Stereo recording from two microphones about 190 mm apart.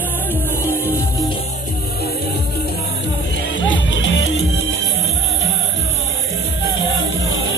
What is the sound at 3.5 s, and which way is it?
Music, 80° left.